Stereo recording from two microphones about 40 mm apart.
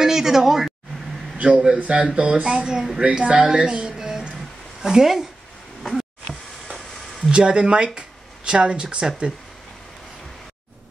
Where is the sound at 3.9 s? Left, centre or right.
Centre.